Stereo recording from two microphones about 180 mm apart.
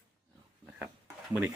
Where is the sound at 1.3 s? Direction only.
10° right (ahead or behind).